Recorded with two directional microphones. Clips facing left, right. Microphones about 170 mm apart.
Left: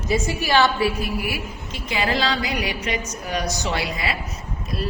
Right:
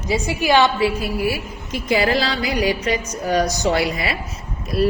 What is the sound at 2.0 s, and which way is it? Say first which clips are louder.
A woman's voice: right 3 dB; 35° right (ahead or behind).